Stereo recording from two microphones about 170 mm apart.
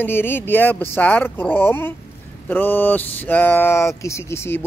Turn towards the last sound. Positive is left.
turn(degrees=15)  # may be behind; listen again after turning